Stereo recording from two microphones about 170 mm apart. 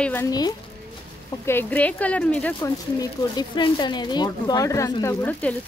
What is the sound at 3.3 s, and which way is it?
Speech, 25° left (ahead or behind).